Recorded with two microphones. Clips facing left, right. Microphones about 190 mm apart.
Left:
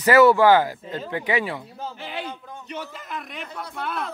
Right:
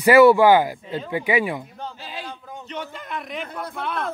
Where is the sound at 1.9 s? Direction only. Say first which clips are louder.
Left 3 dB; 60° left (ahead or behind).